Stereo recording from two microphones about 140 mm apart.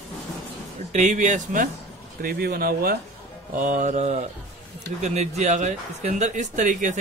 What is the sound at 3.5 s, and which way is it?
Speech, 70° right (ahead or behind).